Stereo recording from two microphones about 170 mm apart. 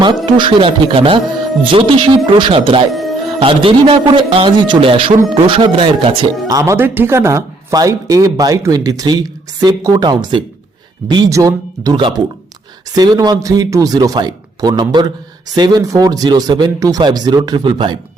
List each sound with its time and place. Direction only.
0.0 s a man's voice: 25° right (ahead or behind)
2.9 s music: centre (ahead or behind)
3.4 s a man's voice: 30° right (ahead or behind)
6.6 s speech: 15° right (ahead or behind)